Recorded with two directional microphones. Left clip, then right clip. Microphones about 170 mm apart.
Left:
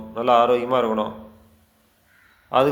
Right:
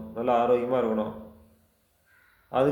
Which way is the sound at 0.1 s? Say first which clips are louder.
Left 6 dB; 15° right (ahead or behind).